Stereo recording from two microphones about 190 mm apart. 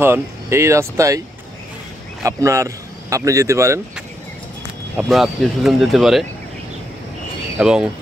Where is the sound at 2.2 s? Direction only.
15° right (ahead or behind).